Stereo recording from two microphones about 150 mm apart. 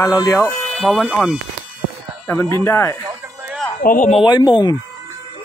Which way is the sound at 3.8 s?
60° left (ahead or behind).